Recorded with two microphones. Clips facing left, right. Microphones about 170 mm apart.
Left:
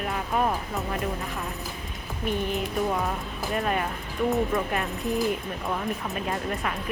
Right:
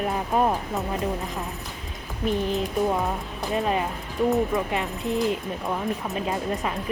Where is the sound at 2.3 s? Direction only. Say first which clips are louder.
Right 3 dB; 35° right (ahead or behind).